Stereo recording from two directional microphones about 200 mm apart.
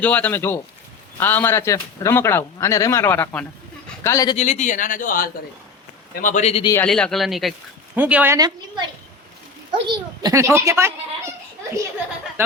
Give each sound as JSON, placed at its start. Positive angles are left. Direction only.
{"t": 0.0, "sound": "speech", "side_deg": 5}
{"t": 4.4, "sound": "speech", "side_deg": 35}
{"t": 6.7, "sound": "a child's voice", "side_deg": 5}
{"t": 9.8, "sound": "a child's voice", "side_deg": -20}